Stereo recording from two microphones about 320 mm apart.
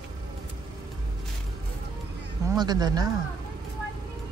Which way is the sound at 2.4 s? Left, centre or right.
Centre.